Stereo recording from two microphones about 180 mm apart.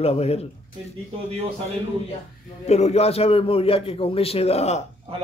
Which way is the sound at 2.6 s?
40° left (ahead or behind).